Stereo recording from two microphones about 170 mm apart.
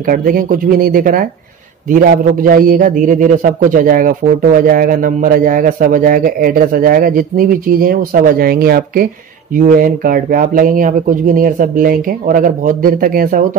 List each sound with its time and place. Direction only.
0.0 s a man's voice: 55° right (ahead or behind)